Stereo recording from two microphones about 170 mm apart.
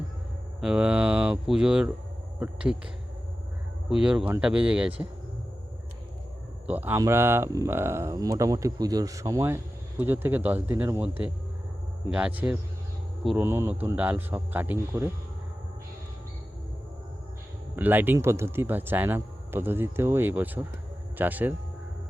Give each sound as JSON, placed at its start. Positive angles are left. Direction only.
{"t": 0.6, "sound": "speech", "side_deg": -5}
{"t": 6.7, "sound": "speech", "side_deg": -10}
{"t": 12.1, "sound": "speech", "side_deg": -10}
{"t": 17.7, "sound": "speech", "side_deg": -10}